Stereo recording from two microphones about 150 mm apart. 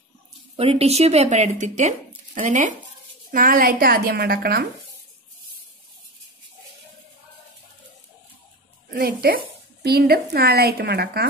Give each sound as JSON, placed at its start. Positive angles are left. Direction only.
{"t": 0.6, "sound": "speech", "side_deg": -40}
{"t": 3.3, "sound": "speech", "side_deg": -70}
{"t": 8.9, "sound": "a woman's voice", "side_deg": -90}